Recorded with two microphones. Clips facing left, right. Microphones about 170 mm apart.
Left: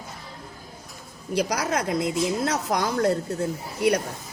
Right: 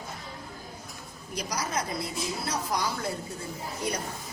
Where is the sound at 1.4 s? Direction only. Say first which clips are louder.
Left 7 dB; 60° left (ahead or behind).